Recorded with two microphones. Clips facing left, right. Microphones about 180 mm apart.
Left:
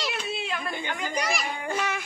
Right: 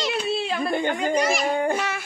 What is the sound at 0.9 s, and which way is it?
Speech, 35° right (ahead or behind).